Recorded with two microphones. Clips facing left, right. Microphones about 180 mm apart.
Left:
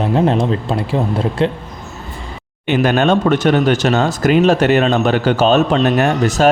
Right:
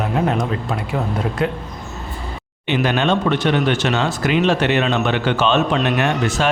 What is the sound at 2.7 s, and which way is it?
Speech, 45° left (ahead or behind).